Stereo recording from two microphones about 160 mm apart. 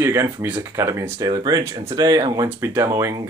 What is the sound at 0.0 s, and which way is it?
Speech, 15° right (ahead or behind).